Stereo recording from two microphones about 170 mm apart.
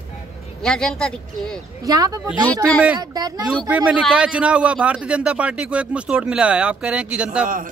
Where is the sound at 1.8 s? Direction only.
20° right (ahead or behind).